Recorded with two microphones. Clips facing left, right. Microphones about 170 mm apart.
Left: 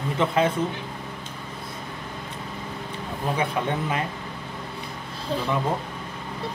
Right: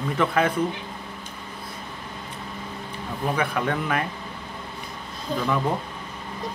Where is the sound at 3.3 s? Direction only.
25° left (ahead or behind).